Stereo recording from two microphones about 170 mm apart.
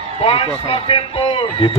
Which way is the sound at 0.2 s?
35° left (ahead or behind).